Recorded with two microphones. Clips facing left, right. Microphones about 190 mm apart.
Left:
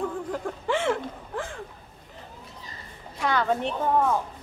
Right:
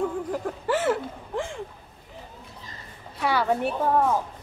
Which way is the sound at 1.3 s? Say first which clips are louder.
Right 4 dB; 15° right (ahead or behind).